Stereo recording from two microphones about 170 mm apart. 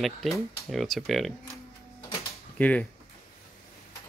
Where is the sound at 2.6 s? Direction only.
10° left (ahead or behind).